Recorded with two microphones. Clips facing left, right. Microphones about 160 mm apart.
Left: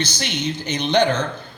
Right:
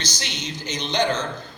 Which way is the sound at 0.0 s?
60° left (ahead or behind).